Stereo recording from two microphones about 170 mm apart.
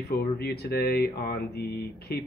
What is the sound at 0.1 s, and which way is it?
Speech, 65° left (ahead or behind).